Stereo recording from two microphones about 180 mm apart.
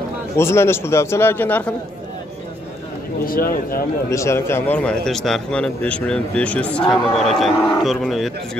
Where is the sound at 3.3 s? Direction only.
55° left (ahead or behind).